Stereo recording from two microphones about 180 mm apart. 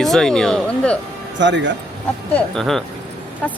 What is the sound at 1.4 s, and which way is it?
Speech, 80° right.